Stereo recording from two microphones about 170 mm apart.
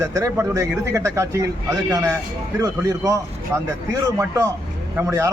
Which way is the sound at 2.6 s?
20° right (ahead or behind).